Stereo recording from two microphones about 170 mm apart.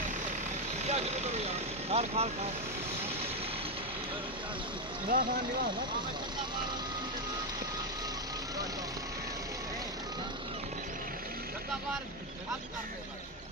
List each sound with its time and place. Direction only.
0.9 s speech: 40° right (ahead or behind)
5.0 s speech: 55° right (ahead or behind)